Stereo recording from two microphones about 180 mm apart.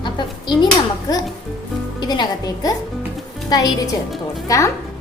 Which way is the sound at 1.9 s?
25° left (ahead or behind).